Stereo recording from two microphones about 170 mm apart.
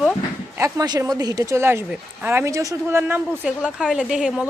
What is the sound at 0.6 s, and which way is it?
Speech, 20° right (ahead or behind).